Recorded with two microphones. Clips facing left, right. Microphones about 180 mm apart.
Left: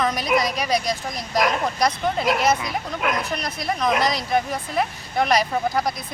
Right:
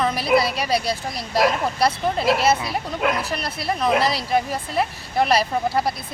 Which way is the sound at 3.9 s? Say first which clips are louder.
Right 2 dB; 30° right (ahead or behind).